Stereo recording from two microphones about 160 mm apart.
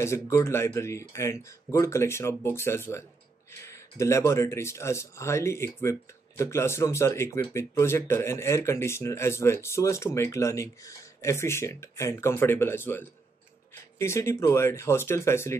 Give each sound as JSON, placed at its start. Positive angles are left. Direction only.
{"t": 0.0, "sound": "speech", "side_deg": 15}